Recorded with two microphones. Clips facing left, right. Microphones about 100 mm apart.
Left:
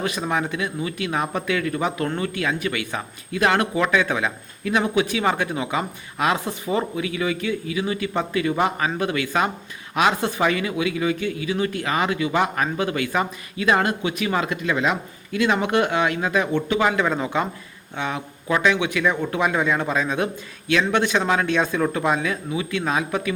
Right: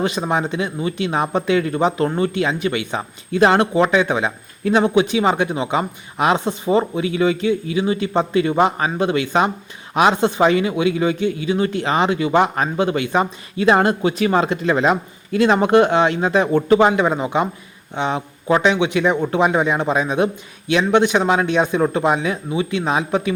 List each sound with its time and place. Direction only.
0.0 s speech: 25° right (ahead or behind)
16.9 s speech: 20° right (ahead or behind)